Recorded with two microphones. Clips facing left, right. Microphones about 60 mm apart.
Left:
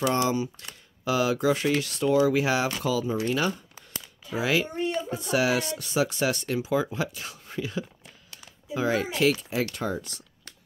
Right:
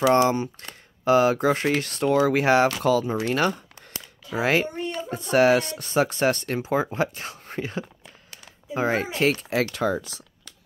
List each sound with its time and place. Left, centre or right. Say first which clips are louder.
0.1 s speech: right 6 dB; right
4.4 s speech: right 3 dB; right
9.4 s speech: right 5 dB; right